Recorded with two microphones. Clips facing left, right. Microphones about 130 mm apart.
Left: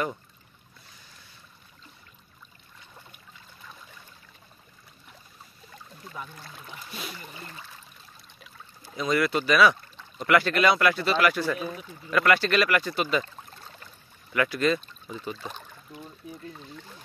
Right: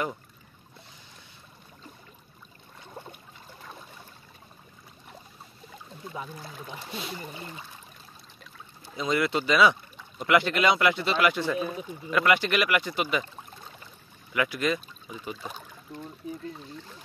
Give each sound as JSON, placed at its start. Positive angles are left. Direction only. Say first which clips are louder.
{"t": 6.0, "sound": "speech", "louder": "right 3 dB", "side_deg": -15}
{"t": 6.8, "sound": "a sound", "louder": "right 2 dB", "side_deg": -25}
{"t": 8.8, "sound": "speech", "louder": "left 1 dB", "side_deg": -20}